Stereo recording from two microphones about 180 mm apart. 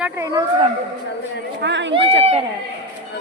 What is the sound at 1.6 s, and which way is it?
Speech, 80° right.